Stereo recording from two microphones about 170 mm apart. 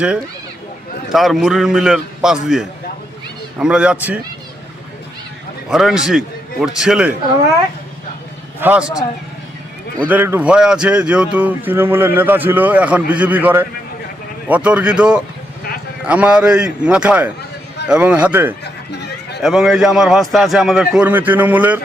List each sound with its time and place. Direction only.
1.1 s a man's voice: centre (ahead or behind)
5.7 s a man's voice: 5° right (ahead or behind)
8.6 s speech: 10° right (ahead or behind)
10.0 s speech: 10° right (ahead or behind)
18.6 s a sound: 80° left
19.4 s a man's voice: centre (ahead or behind)